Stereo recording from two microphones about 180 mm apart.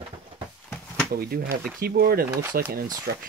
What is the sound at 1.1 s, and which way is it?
Speech, 55° right (ahead or behind).